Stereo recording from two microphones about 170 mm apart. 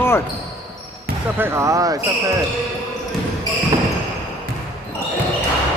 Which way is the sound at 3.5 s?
25° left (ahead or behind).